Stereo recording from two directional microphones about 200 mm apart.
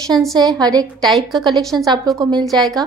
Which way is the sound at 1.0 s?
Centre (ahead or behind).